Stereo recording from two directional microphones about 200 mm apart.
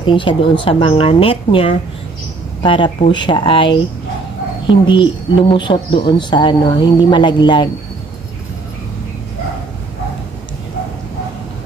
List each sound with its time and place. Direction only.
0.0 s speech: 25° left (ahead or behind)